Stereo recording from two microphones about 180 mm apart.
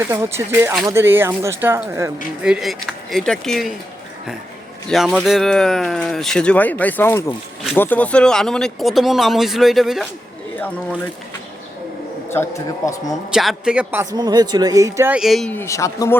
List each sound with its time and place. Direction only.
0.1 s speech: 15° right (ahead or behind)
2.4 s speech: 5° right (ahead or behind)
4.9 s speech: centre (ahead or behind)
12.3 s a man's voice: 15° left (ahead or behind)
13.3 s speech: centre (ahead or behind)
15.2 s a man's voice: centre (ahead or behind); by 16.1 s 15° left (ahead or behind)